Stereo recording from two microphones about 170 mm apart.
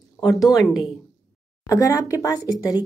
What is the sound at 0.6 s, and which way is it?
Speech, centre (ahead or behind).